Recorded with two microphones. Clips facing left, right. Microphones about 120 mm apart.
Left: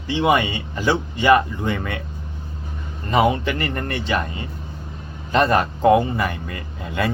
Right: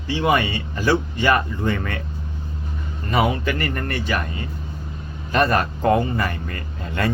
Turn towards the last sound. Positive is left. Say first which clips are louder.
# even
turn(degrees=10)  # may be behind; listen again after turning